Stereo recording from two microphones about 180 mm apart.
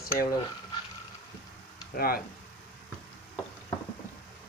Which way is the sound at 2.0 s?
55° left (ahead or behind).